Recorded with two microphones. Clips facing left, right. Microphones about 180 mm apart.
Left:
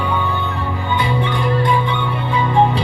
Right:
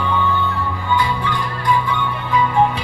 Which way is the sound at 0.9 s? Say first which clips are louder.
Left 1 dB; 25° left (ahead or behind).